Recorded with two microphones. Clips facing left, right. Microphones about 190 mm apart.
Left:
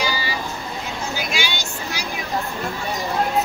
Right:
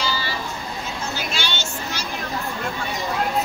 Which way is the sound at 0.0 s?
10° left (ahead or behind).